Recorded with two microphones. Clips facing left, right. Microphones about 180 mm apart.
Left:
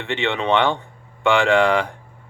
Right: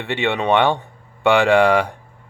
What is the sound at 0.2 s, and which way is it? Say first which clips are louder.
Speech: right 2 dB; 15° right (ahead or behind).